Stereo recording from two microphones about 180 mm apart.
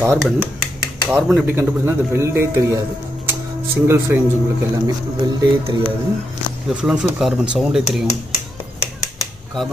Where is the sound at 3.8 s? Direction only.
15° right (ahead or behind).